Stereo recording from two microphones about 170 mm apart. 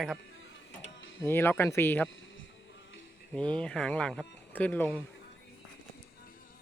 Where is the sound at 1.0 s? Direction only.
90° left.